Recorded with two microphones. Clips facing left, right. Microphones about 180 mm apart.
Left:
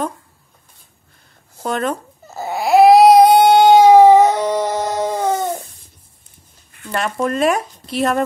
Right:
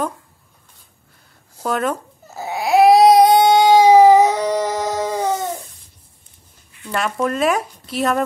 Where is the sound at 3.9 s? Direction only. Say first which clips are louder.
Left 2 dB; centre (ahead or behind).